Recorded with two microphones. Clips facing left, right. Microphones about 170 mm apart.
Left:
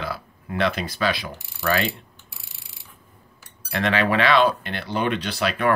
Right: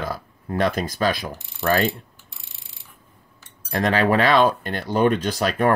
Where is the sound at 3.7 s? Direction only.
40° right (ahead or behind).